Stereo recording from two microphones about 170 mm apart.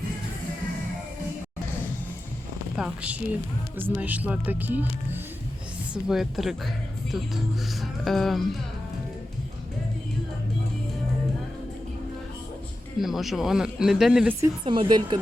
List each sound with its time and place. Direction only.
2.7 s speech: 5° right (ahead or behind)
7.8 s speech: centre (ahead or behind)
13.0 s speech: centre (ahead or behind)
14.4 s speech: 30° right (ahead or behind)